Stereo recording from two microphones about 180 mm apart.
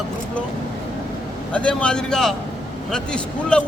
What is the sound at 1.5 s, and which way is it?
Speech, 5° left (ahead or behind).